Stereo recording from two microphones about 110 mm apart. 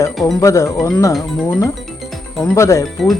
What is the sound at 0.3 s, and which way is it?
Speech, 30° left (ahead or behind).